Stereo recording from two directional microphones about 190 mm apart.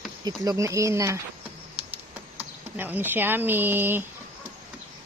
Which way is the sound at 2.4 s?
10° right (ahead or behind).